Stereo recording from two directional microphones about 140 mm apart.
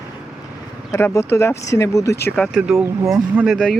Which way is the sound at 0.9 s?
20° left (ahead or behind).